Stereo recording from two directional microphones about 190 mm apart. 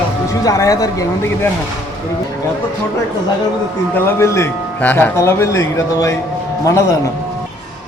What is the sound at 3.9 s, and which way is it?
Speech, 15° left (ahead or behind).